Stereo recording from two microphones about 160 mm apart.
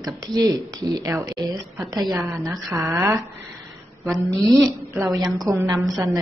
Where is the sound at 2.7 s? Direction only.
20° right (ahead or behind).